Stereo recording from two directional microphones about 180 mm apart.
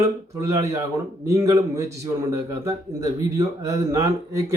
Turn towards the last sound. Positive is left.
turn(degrees=-15)  # may be behind; listen again after turning